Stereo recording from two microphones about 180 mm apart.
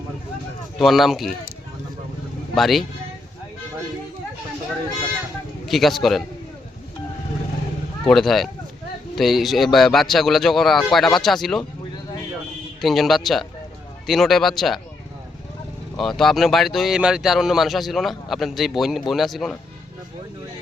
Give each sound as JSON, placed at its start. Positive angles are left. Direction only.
{"t": 0.8, "sound": "speech", "side_deg": 0}
{"t": 2.6, "sound": "speech", "side_deg": 0}
{"t": 5.6, "sound": "speech", "side_deg": 0}
{"t": 8.0, "sound": "speech", "side_deg": 0}
{"t": 12.8, "sound": "speech", "side_deg": 0}
{"t": 16.0, "sound": "speech", "side_deg": 0}